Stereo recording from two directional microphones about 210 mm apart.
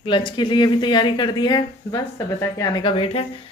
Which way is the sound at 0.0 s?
20° left (ahead or behind).